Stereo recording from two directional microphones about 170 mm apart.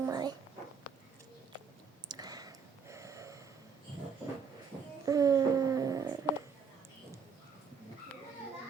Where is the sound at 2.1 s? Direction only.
20° right (ahead or behind).